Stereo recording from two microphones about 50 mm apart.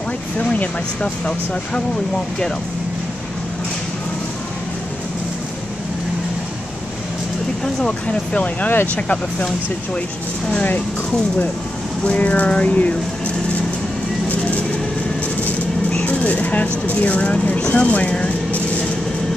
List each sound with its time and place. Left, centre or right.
0.4 s speech: left
7.6 s speech: centre
12.0 s speech: left
15.9 s a sound: left
17.0 s speech: left